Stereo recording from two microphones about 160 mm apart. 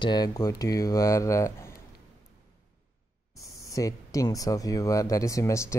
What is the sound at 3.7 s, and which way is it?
Speech, 20° left (ahead or behind).